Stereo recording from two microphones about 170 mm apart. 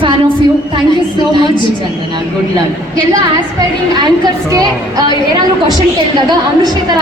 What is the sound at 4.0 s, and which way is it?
Speech, 25° right (ahead or behind).